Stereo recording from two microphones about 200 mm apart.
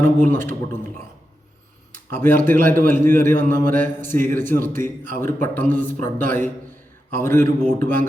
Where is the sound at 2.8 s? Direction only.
10° left (ahead or behind).